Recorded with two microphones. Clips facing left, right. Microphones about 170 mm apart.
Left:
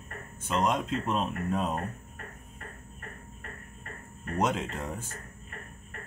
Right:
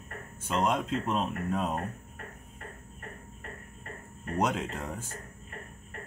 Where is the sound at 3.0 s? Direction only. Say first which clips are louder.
Right 1 dB; 25° right (ahead or behind).